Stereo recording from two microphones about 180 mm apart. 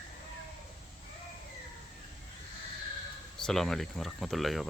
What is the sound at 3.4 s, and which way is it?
Speech, centre (ahead or behind).